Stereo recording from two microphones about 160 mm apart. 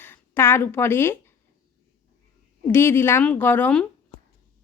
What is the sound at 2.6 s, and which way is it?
A woman's voice, 15° left (ahead or behind).